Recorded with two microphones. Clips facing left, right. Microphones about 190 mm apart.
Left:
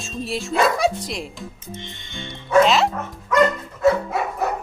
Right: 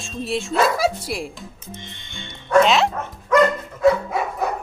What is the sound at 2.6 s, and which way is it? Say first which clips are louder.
Speech: left 1 dB; centre (ahead or behind).